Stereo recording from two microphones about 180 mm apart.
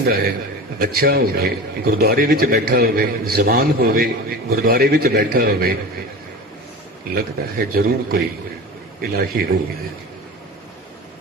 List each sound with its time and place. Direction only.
0.0 s a man's voice: 55° right (ahead or behind)
7.1 s a man's voice: 55° right (ahead or behind)